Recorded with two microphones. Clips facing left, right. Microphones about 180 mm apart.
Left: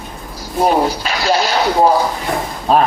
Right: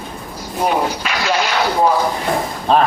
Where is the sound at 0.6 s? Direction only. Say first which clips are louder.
Left 4 dB; 35° left (ahead or behind).